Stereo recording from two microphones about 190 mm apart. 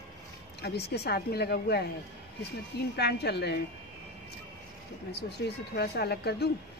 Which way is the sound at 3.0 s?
60° left (ahead or behind).